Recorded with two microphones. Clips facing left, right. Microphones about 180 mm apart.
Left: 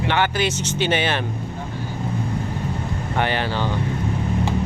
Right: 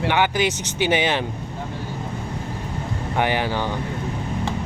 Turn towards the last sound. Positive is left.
turn(degrees=-15)  # may be behind; listen again after turning